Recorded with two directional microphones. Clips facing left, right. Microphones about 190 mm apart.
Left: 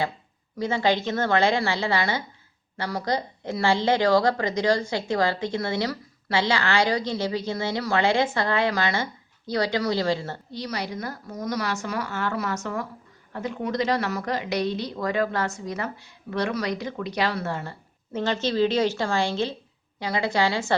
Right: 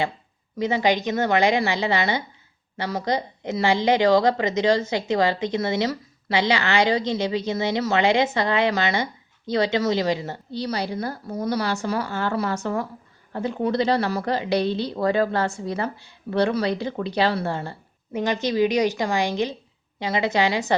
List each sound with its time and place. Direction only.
0.5 s a woman's voice: 20° right (ahead or behind)
10.5 s a woman's voice: 30° right (ahead or behind)
18.1 s a woman's voice: 15° right (ahead or behind)